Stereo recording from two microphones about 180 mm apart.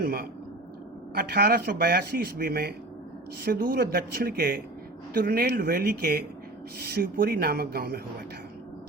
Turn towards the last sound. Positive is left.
turn(degrees=-60)  # may be behind; listen again after turning